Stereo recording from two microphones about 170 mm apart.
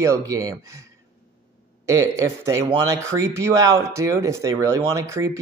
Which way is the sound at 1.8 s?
15° right (ahead or behind).